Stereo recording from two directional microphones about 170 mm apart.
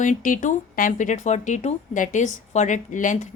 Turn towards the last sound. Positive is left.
turn(degrees=50)  # may be behind; listen again after turning